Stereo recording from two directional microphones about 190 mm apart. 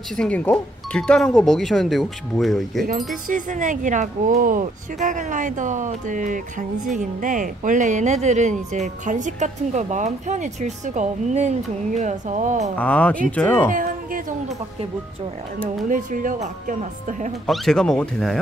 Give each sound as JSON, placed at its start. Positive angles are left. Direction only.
{"t": 0.1, "sound": "speech", "side_deg": 5}
{"t": 3.3, "sound": "speech", "side_deg": -45}
{"t": 12.7, "sound": "speech", "side_deg": 5}
{"t": 13.7, "sound": "speech", "side_deg": -45}
{"t": 15.9, "sound": "speech", "side_deg": -45}
{"t": 17.5, "sound": "speech", "side_deg": 5}